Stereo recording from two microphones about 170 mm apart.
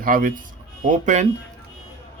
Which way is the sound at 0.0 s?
55° right (ahead or behind).